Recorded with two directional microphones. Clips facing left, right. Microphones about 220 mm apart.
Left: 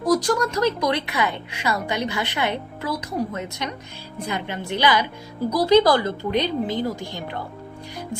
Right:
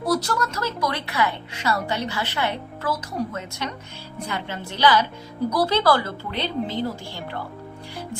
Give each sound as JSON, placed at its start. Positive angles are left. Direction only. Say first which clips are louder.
{"t": 0.1, "sound": "speech", "louder": "left 4 dB", "side_deg": 15}